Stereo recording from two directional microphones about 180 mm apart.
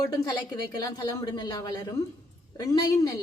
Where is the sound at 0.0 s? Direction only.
20° left (ahead or behind).